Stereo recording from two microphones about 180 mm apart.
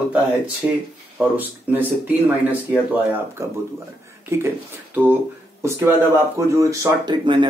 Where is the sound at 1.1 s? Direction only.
10° right (ahead or behind).